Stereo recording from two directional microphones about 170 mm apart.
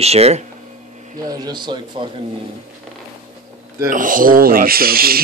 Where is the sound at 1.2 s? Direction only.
20° right (ahead or behind).